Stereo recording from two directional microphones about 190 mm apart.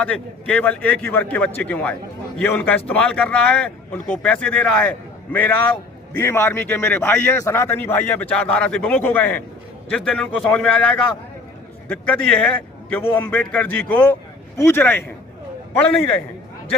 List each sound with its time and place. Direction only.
0.0 s a man's voice: 5° left (ahead or behind)
11.9 s a man's voice: 5° left (ahead or behind)